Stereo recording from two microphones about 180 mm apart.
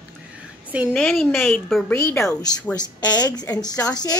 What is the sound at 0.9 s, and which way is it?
A woman's voice, 5° left (ahead or behind).